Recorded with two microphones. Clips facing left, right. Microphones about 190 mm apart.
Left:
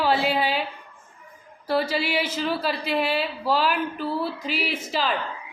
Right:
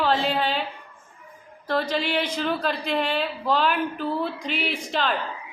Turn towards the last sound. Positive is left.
turn(degrees=5)  # may be behind; listen again after turning